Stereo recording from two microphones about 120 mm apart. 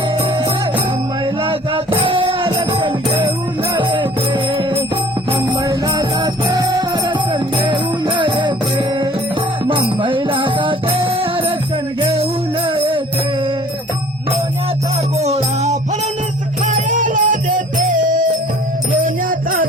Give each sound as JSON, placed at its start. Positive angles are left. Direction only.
{"t": 1.4, "sound": "music", "side_deg": -45}
{"t": 5.6, "sound": "music", "side_deg": -35}
{"t": 9.6, "sound": "music", "side_deg": -45}
{"t": 11.9, "sound": "jingle bell", "side_deg": -50}
{"t": 15.2, "sound": "music", "side_deg": -65}
{"t": 16.6, "sound": "music", "side_deg": -90}